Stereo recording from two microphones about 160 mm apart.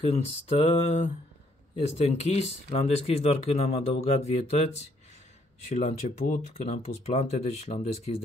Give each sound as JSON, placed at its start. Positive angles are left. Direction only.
{"t": 0.0, "sound": "speech", "side_deg": 40}